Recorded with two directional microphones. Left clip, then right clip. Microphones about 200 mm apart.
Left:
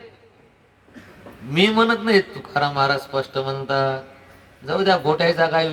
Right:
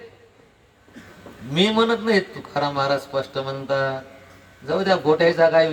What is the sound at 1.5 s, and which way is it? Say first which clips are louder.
A man's voice: left 2 dB; 20° left (ahead or behind).